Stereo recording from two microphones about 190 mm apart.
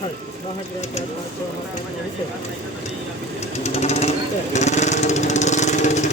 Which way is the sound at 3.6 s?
35° left (ahead or behind).